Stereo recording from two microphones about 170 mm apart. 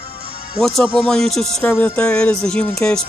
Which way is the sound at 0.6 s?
Centre (ahead or behind).